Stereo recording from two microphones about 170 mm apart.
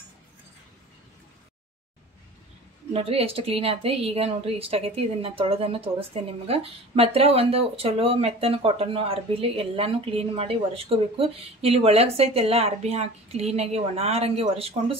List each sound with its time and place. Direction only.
2.9 s a woman's voice: 35° right (ahead or behind)